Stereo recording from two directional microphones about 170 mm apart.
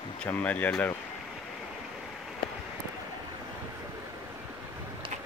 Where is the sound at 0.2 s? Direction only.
10° left (ahead or behind).